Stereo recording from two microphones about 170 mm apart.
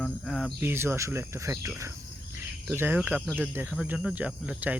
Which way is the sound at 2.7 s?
10° right (ahead or behind).